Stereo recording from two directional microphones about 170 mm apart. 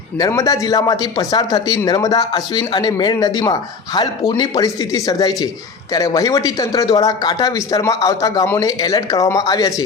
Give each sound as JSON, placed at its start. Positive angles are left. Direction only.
{"t": 0.2, "sound": "speech", "side_deg": 20}